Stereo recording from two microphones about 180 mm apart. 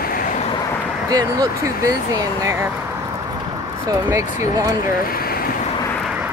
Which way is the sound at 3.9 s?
15° right (ahead or behind).